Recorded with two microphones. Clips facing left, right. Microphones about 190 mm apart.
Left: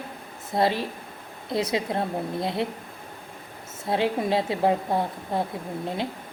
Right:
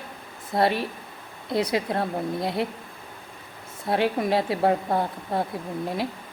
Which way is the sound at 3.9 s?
25° left (ahead or behind).